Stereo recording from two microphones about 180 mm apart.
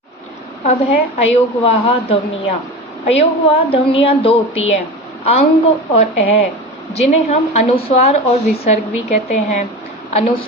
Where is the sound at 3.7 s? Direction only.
30° left (ahead or behind).